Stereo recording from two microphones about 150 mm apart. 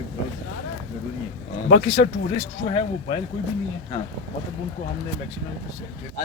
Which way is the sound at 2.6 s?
45° left (ahead or behind).